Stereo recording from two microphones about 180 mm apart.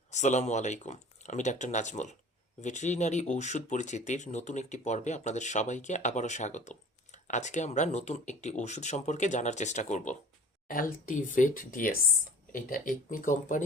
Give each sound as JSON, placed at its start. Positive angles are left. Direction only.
{"t": 0.1, "sound": "speech", "side_deg": 40}